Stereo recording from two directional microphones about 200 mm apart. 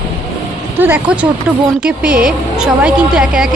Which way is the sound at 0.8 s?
10° right (ahead or behind).